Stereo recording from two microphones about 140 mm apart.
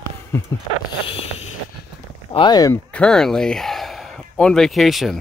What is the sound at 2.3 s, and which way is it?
Speech, 35° left (ahead or behind).